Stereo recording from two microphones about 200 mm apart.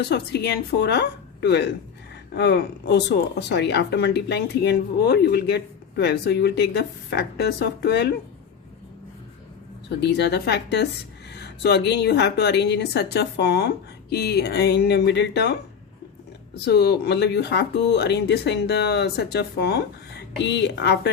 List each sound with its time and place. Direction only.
0.0 s speech: 55° left (ahead or behind)
10.0 s speech: 55° left (ahead or behind)
16.6 s speech: 55° left (ahead or behind)